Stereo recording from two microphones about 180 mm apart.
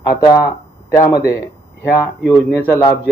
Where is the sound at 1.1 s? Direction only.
60° left (ahead or behind).